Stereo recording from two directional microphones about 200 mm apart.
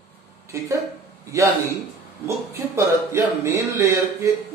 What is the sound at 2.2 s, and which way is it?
Speech, 15° right (ahead or behind).